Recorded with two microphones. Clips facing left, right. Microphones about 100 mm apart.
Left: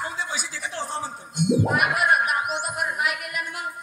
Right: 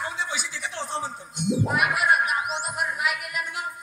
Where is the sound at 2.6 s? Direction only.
50° left (ahead or behind).